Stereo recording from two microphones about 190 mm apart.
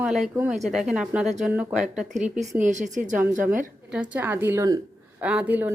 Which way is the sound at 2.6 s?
40° right (ahead or behind).